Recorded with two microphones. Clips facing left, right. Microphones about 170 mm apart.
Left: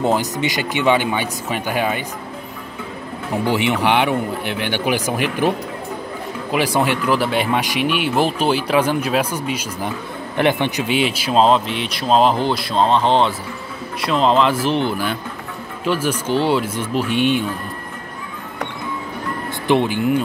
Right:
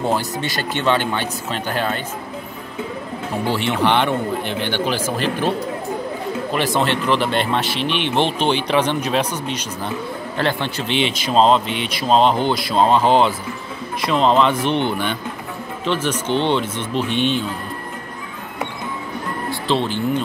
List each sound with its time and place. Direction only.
0.0 s speech: 15° left (ahead or behind)
3.4 s speech: 15° left (ahead or behind)
6.5 s a man's voice: 10° left (ahead or behind)
19.7 s speech: 15° left (ahead or behind)